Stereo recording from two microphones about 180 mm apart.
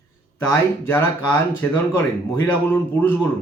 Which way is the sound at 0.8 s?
10° left (ahead or behind).